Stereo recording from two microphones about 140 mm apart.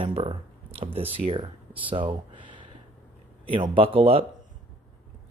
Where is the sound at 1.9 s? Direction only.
35° right (ahead or behind).